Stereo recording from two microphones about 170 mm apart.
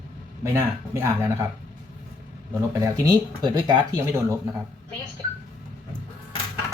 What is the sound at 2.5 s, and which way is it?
Speech, 20° right (ahead or behind).